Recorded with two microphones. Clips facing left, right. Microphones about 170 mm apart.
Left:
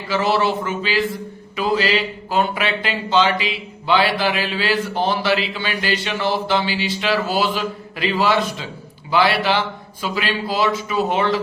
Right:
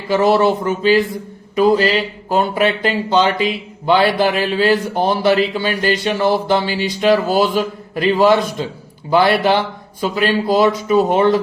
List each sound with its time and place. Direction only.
0.1 s speech: 45° right (ahead or behind)